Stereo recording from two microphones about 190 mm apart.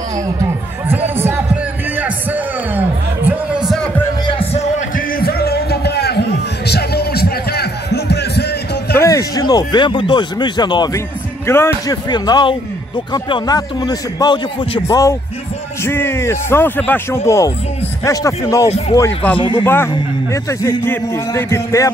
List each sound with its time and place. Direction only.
0.4 s a sound: 10° right (ahead or behind)
2.0 s music: 10° right (ahead or behind)
4.4 s music: 35° left (ahead or behind); by 8.5 s 60° left (ahead or behind)
8.9 s a man's voice: 15° left (ahead or behind)
19.3 s a man's voice: 25° left (ahead or behind)
19.6 s speech: 10° left (ahead or behind)